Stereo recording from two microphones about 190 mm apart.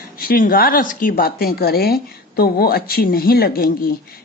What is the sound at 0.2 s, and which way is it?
Speech, 50° left (ahead or behind).